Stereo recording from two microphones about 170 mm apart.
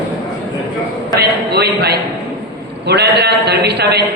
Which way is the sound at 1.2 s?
70° right (ahead or behind).